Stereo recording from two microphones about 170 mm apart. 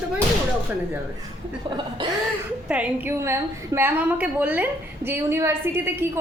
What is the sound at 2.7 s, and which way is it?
A woman's voice, 10° right (ahead or behind).